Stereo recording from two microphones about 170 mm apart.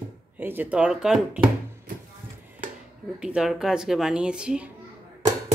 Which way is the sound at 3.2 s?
5° right (ahead or behind).